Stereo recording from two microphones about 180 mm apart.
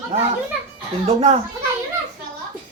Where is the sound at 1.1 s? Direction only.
35° right (ahead or behind).